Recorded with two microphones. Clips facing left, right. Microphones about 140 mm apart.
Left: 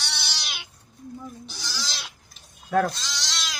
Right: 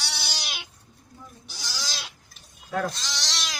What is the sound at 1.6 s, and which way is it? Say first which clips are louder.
Goat: right 1 dB; 15° right (ahead or behind).